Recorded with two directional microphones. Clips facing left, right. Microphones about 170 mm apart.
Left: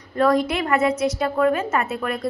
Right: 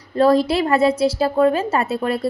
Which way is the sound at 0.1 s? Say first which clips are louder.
Right 4 dB; 30° right (ahead or behind).